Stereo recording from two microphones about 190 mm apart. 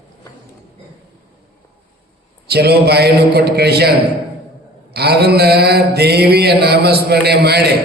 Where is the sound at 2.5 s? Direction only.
55° right (ahead or behind).